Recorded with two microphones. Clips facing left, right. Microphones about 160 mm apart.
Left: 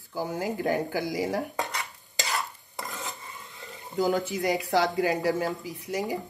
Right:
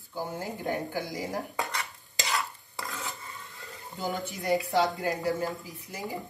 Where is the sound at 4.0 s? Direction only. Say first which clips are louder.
Left 8 dB; 85° left.